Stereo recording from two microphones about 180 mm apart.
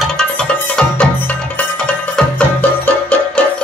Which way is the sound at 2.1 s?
5° left (ahead or behind).